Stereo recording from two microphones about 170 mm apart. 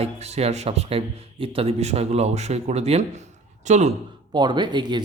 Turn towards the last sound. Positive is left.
turn(degrees=-25)  # may be behind; listen again after turning